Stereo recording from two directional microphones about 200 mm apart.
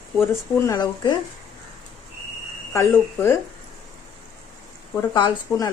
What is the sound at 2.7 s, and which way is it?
Speech, 10° left (ahead or behind).